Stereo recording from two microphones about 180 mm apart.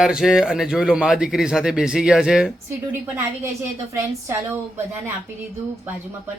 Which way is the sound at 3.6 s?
15° right (ahead or behind).